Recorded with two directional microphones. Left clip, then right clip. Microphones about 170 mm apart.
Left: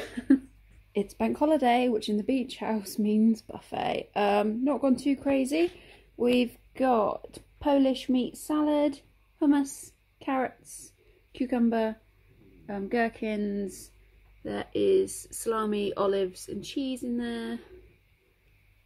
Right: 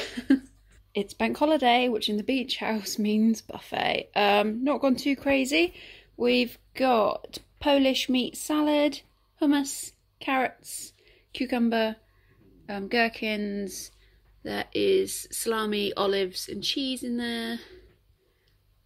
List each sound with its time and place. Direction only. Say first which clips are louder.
0.0 s cough: even; centre (ahead or behind)
0.9 s speech: right 1 dB; 5° left (ahead or behind)
13.4 s speech: even; 20° right (ahead or behind)
13.7 s speech: right 3 dB; centre (ahead or behind)